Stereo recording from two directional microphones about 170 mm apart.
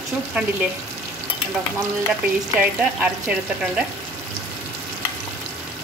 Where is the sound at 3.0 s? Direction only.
5° right (ahead or behind).